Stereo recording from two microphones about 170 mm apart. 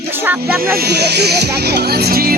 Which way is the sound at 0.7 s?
70° right (ahead or behind).